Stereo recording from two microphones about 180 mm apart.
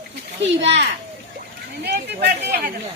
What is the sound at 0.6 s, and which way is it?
Speech, 85° right.